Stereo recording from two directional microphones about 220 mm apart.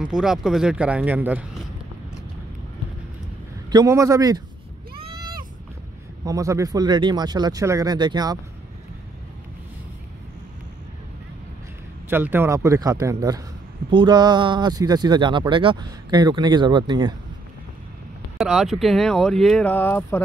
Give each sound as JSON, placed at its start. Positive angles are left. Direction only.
{"t": 0.0, "sound": "speech", "side_deg": -5}
{"t": 3.7, "sound": "speech", "side_deg": -15}
{"t": 6.2, "sound": "speech", "side_deg": -15}
{"t": 12.1, "sound": "speech", "side_deg": -10}
{"t": 18.4, "sound": "speech", "side_deg": 0}